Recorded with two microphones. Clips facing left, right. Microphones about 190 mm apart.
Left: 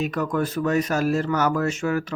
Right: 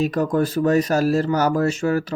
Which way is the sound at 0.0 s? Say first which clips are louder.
Right 4 dB; 35° right (ahead or behind).